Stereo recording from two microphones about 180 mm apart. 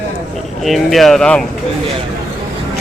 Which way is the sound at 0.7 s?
Centre (ahead or behind).